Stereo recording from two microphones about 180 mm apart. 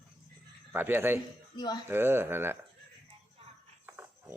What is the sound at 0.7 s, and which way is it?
Speech, 10° right (ahead or behind).